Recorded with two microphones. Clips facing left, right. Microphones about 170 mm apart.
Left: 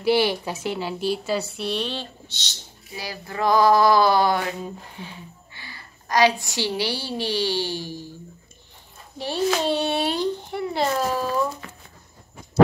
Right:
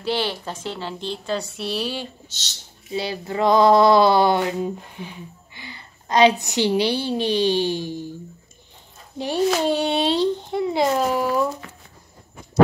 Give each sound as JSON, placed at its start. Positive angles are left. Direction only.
{"t": 0.0, "sound": "a woman's voice", "side_deg": 10}
{"t": 2.9, "sound": "a sound", "side_deg": -25}
{"t": 9.5, "sound": "a child's voice", "side_deg": -10}